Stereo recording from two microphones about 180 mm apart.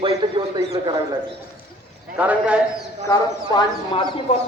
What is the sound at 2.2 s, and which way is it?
Speech, 5° right (ahead or behind).